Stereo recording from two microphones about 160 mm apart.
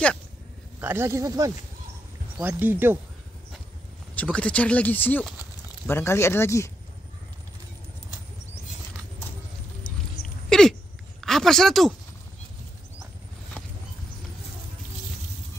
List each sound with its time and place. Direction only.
0.7 s speech: 15° right (ahead or behind)
4.1 s speech: 10° left (ahead or behind)
10.2 s a sound: 5° left (ahead or behind)